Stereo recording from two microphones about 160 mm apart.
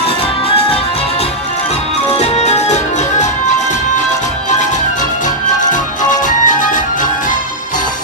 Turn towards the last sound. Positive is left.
turn(degrees=55)  # may be behind; listen again after turning